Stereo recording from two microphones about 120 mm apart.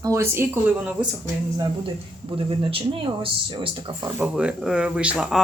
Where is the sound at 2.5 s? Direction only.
50° right (ahead or behind).